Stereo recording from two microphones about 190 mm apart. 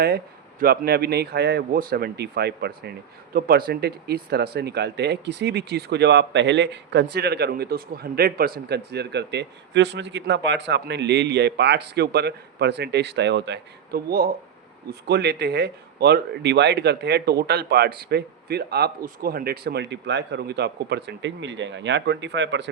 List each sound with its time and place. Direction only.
0.6 s speech: 55° right (ahead or behind)